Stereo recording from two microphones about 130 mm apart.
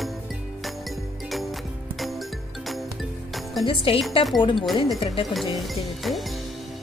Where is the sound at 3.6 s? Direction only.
40° left (ahead or behind).